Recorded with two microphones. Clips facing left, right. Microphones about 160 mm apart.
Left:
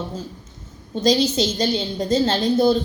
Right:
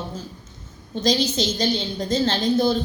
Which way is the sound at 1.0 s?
35° left (ahead or behind).